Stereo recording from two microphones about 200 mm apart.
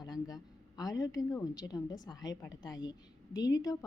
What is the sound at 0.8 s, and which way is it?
A woman's voice, 20° left (ahead or behind).